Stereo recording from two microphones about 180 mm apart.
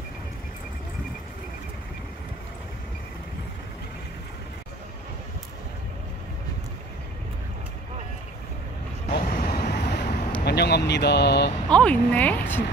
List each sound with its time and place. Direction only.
9.1 s vehicle: 55° left (ahead or behind)
10.4 s speech: 65° left (ahead or behind)
11.7 s speech: 5° left (ahead or behind)